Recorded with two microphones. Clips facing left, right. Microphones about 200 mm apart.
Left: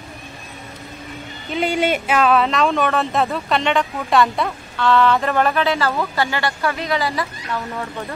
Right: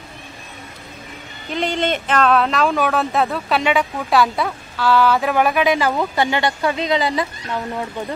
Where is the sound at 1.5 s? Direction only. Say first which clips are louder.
Left 1 dB; 5° left (ahead or behind).